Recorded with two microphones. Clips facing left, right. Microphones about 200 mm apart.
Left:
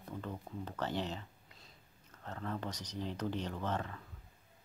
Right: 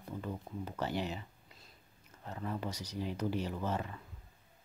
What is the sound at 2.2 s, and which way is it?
Speech, 10° right (ahead or behind).